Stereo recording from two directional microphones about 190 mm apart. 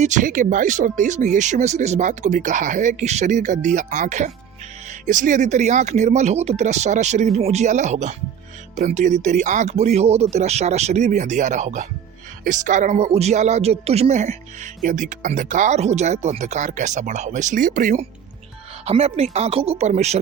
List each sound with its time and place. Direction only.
0.0 s speech: 40° right (ahead or behind)